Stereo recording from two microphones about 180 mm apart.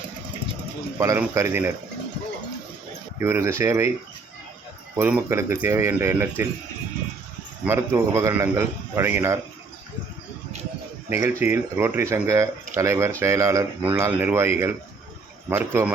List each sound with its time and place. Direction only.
0.9 s a man's voice: 15° right (ahead or behind)
3.2 s a man's voice: 15° right (ahead or behind)
4.9 s a man's voice: 10° right (ahead or behind)
7.6 s a man's voice: 15° right (ahead or behind)
11.1 s a man's voice: 15° right (ahead or behind)